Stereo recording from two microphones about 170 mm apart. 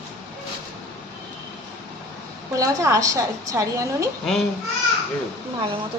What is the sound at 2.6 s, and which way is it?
Speech, 20° right (ahead or behind).